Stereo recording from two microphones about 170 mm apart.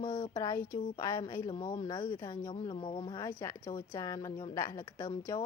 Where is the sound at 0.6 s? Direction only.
55° left (ahead or behind).